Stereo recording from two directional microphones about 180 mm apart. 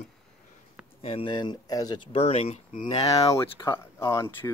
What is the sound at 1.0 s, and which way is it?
Speech, 30° left (ahead or behind).